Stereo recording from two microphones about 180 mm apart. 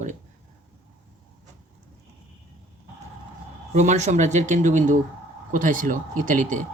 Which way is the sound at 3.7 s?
40° right (ahead or behind).